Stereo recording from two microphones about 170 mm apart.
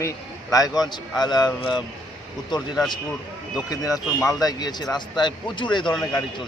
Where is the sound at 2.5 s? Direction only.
25° left (ahead or behind).